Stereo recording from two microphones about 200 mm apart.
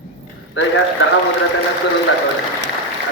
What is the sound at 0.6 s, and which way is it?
Speech, 70° left (ahead or behind).